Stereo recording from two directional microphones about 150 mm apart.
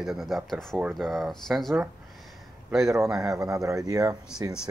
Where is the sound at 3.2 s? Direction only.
20° right (ahead or behind).